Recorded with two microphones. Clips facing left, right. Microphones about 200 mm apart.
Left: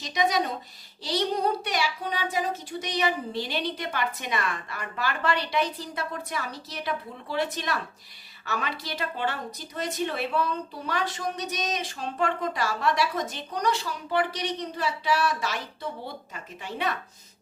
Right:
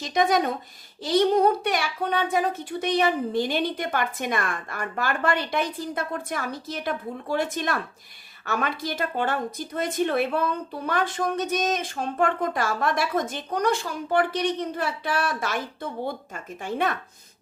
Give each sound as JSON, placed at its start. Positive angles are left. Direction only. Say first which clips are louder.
{"t": 0.0, "sound": "a woman's voice", "louder": "right 4 dB", "side_deg": -50}